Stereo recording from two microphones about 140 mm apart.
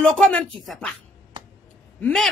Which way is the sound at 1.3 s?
35° right (ahead or behind).